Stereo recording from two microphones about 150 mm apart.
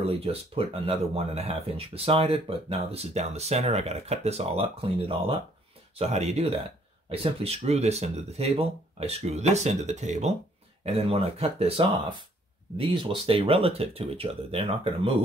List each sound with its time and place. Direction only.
0.2 s speech: 40° right (ahead or behind)